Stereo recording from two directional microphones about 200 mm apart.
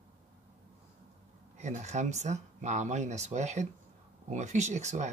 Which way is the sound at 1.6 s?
35° right (ahead or behind).